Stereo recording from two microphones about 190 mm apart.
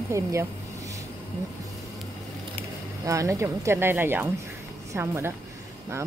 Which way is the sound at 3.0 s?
15° right (ahead or behind).